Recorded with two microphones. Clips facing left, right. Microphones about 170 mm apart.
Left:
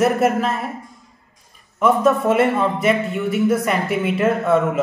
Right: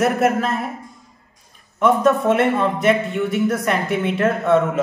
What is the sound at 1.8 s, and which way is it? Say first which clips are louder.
Speech: even; 5° left (ahead or behind).